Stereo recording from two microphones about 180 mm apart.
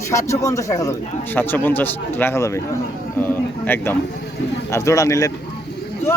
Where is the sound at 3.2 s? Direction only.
10° left (ahead or behind).